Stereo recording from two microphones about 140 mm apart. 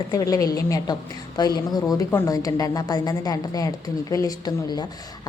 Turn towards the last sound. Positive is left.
turn(degrees=30)  # may be behind; listen again after turning